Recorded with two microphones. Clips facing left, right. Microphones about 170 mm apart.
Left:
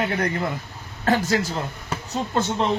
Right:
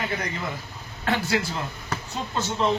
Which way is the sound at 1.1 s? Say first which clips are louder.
Left 4 dB; 40° left (ahead or behind).